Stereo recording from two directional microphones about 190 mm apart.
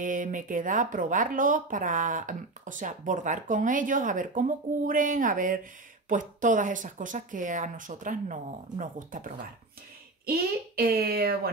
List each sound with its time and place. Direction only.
0.0 s speech: 45° right (ahead or behind)
10.8 s speech: 50° right (ahead or behind)